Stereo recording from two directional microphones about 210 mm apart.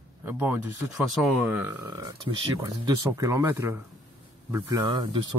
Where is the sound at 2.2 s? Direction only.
20° right (ahead or behind).